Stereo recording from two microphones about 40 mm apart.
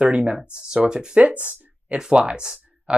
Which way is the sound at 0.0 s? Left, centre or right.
Right.